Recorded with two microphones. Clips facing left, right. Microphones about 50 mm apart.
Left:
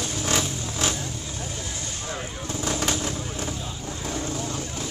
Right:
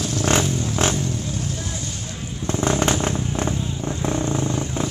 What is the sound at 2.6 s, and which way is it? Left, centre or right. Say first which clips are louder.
Vehicle: right 6 dB; right.